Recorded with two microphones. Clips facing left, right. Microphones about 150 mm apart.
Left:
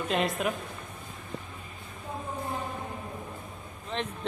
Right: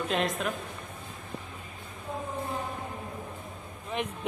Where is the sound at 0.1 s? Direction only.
Centre (ahead or behind).